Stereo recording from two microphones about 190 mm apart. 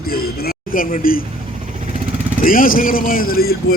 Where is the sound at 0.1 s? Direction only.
50° left (ahead or behind).